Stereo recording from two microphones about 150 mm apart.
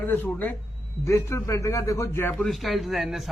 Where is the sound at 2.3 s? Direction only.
5° left (ahead or behind).